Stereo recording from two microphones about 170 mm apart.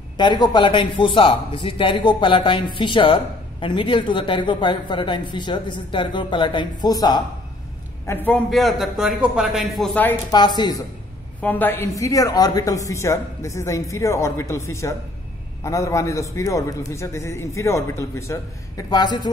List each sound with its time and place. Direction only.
0.2 s speech: 25° left (ahead or behind)
8.1 s a man's voice: 10° left (ahead or behind)
8.5 s a man's voice: centre (ahead or behind)
10.3 s speech: 25° left (ahead or behind)
11.4 s a man's voice: 10° left (ahead or behind)